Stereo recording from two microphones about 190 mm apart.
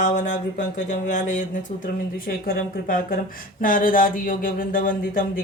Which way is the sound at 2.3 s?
50° left (ahead or behind).